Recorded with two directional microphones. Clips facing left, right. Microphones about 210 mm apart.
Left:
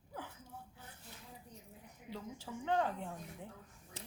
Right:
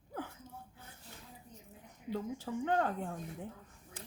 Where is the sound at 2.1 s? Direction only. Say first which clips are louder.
Right 8 dB; 50° right (ahead or behind).